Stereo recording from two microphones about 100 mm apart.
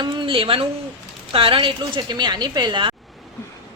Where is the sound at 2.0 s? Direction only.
45° right (ahead or behind).